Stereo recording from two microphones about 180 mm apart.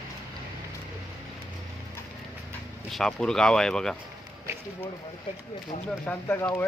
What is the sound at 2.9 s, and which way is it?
Speech, 5° left (ahead or behind).